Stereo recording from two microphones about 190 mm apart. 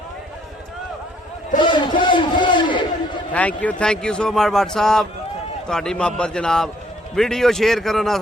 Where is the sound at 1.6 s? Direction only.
25° left (ahead or behind).